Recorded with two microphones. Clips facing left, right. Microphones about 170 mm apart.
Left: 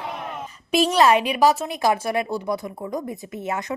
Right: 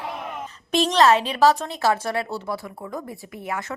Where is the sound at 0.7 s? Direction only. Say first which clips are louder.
Left 1 dB; 10° left (ahead or behind).